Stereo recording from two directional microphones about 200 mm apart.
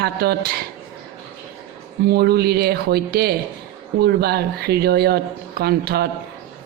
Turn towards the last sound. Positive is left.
turn(degrees=-50)  # may be behind; listen again after turning